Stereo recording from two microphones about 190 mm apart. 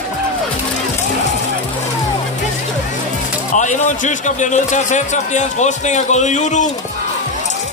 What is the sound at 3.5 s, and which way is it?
A man's voice, 40° left (ahead or behind).